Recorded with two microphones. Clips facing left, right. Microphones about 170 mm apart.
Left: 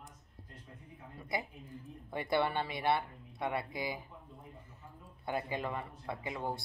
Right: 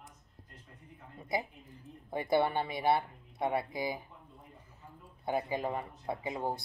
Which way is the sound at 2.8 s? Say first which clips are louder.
Right 4 dB; 20° right (ahead or behind).